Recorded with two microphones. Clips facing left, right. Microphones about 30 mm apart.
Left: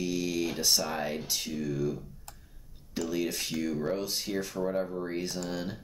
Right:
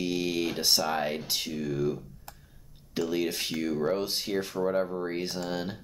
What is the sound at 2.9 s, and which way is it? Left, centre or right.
Speech, right.